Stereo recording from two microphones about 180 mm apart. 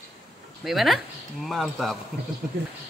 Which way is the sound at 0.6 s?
Centre (ahead or behind).